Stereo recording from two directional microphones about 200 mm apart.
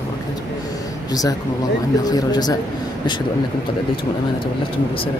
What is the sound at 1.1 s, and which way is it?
Speech, 20° left (ahead or behind).